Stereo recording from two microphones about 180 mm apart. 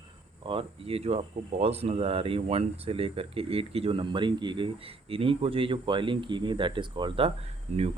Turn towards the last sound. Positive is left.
turn(degrees=-35)  # may be behind; listen again after turning